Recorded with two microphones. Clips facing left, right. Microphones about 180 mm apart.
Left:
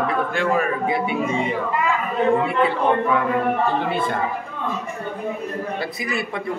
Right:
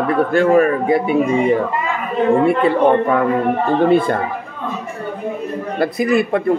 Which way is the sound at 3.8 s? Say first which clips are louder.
Right 9 dB; 45° right (ahead or behind).